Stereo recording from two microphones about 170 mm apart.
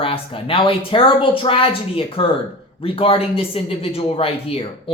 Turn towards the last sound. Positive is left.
turn(degrees=35)  # may be behind; listen again after turning